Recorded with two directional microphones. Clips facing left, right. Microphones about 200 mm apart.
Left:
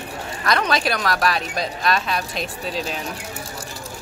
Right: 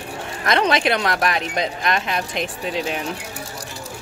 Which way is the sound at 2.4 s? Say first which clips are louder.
Right 2 dB; 65° right (ahead or behind).